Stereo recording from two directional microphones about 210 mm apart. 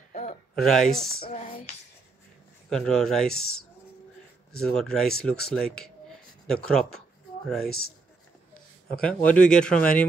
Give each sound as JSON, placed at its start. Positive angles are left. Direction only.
{"t": 0.1, "sound": "a sound", "side_deg": 30}
{"t": 0.6, "sound": "speech", "side_deg": 0}
{"t": 2.7, "sound": "speech", "side_deg": 5}
{"t": 4.6, "sound": "speech", "side_deg": 5}
{"t": 9.0, "sound": "speech", "side_deg": 5}